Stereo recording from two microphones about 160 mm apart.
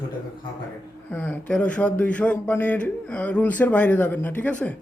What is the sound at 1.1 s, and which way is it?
Speech, 10° left (ahead or behind).